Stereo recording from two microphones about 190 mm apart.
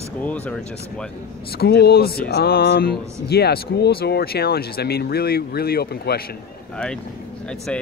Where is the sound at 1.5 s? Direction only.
55° left (ahead or behind).